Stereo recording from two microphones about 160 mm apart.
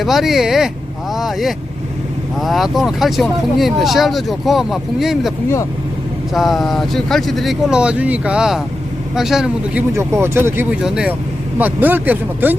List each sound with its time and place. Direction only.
0.0 s speech: centre (ahead or behind)
6.3 s speech: centre (ahead or behind)
9.9 s speech: 15° right (ahead or behind)